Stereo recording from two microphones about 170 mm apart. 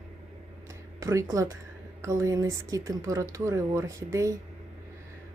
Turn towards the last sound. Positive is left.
turn(degrees=-20)  # may be behind; listen again after turning